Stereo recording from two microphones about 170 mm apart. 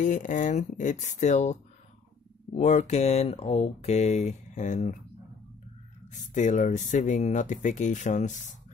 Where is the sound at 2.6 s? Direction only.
45° left (ahead or behind).